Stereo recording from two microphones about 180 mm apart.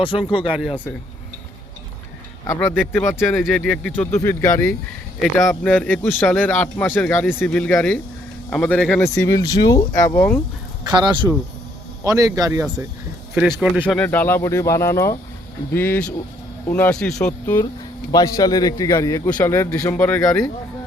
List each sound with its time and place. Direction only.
0.4 s speech: 5° right (ahead or behind)
2.5 s speech: 15° left (ahead or behind)
5.2 s speech: centre (ahead or behind)
10.8 s a man's voice: 25° right (ahead or behind)
13.3 s speech: 5° right (ahead or behind)
13.7 s speech: 5° left (ahead or behind)
18.1 s a man's voice: 20° left (ahead or behind)